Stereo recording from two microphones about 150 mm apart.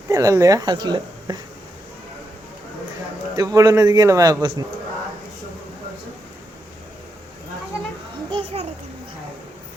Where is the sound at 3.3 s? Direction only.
25° right (ahead or behind).